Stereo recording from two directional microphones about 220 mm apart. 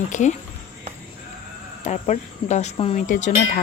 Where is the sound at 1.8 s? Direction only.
30° left (ahead or behind).